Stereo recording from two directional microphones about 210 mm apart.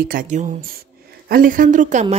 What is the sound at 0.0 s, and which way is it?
Speech, 40° right (ahead or behind).